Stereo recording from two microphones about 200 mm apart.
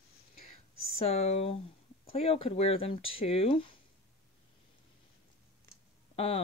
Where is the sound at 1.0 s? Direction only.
30° left (ahead or behind).